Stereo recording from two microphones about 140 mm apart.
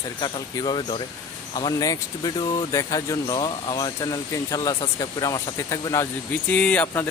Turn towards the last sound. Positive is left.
turn(degrees=10)  # may be behind; listen again after turning